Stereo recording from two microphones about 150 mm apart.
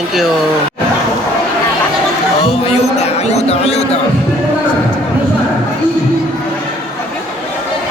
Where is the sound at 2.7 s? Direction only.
45° left (ahead or behind).